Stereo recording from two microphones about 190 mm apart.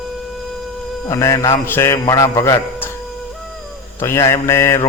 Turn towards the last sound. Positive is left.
turn(degrees=15)  # may be behind; listen again after turning